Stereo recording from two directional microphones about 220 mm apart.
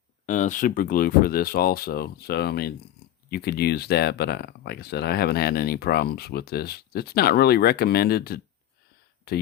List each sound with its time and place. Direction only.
0.3 s speech: 35° left (ahead or behind)